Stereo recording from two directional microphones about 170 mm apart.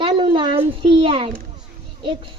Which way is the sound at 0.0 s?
30° right (ahead or behind).